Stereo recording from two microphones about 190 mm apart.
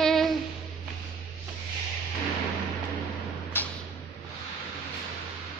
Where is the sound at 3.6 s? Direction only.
10° left (ahead or behind).